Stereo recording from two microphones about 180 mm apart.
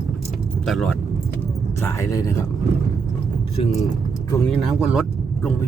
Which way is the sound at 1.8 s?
15° left (ahead or behind).